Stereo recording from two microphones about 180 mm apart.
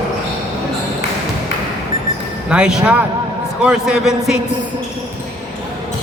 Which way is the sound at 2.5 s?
5° right (ahead or behind).